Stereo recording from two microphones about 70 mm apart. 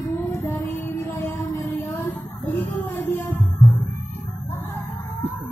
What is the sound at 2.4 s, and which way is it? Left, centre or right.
Music, left.